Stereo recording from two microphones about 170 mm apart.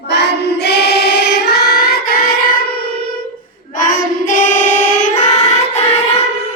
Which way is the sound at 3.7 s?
50° left (ahead or behind).